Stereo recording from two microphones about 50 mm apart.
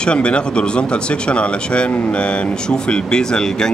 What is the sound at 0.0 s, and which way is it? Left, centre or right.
Speech, left.